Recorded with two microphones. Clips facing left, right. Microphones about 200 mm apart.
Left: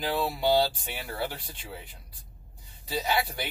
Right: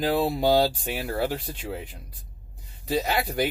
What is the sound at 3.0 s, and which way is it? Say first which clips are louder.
Speech: right 4 dB; 45° right (ahead or behind).